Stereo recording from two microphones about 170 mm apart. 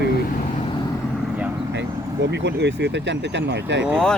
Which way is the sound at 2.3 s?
90° right.